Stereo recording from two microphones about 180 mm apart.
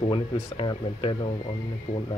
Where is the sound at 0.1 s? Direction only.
25° left (ahead or behind).